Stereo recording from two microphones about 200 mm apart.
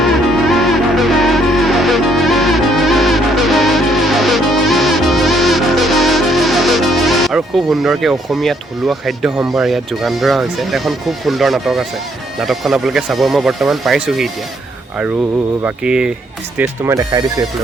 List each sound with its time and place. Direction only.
0.0 s music: centre (ahead or behind)
9.6 s speech: centre (ahead or behind)
15.6 s speech: 5° right (ahead or behind)
16.6 s speech: 15° right (ahead or behind)